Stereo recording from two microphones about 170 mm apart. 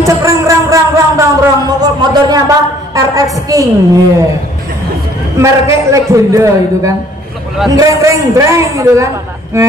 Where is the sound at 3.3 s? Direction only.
20° right (ahead or behind).